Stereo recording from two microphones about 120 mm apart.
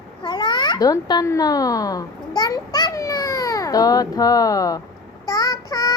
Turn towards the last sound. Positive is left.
turn(degrees=30)  # may be behind; listen again after turning